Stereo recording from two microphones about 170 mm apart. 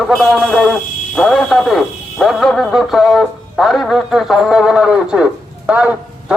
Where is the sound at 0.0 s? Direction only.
Centre (ahead or behind).